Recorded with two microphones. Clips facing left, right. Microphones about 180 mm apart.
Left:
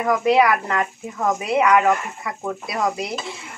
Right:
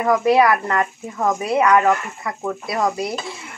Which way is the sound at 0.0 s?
Centre (ahead or behind).